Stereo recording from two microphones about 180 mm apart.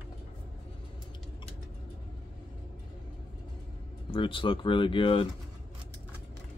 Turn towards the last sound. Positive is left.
turn(degrees=30)  # may be behind; listen again after turning